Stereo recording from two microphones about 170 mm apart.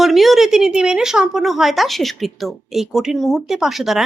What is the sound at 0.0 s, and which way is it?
A woman's voice, centre (ahead or behind).